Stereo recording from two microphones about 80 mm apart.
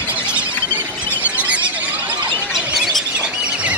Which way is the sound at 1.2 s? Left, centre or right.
Centre.